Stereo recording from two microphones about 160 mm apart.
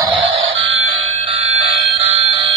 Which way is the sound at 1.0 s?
40° right (ahead or behind).